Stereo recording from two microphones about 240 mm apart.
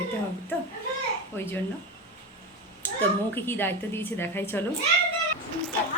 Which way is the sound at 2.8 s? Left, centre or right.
Centre.